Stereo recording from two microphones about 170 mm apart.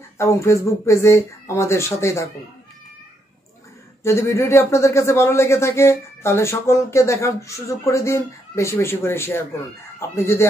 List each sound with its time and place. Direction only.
0.2 s speech: 15° left (ahead or behind)
4.0 s speech: 15° left (ahead or behind)